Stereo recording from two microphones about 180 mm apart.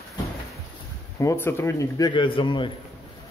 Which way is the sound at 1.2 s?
15° left (ahead or behind).